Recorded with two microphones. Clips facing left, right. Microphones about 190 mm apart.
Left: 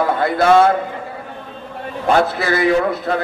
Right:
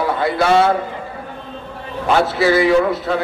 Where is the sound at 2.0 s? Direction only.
50° left (ahead or behind).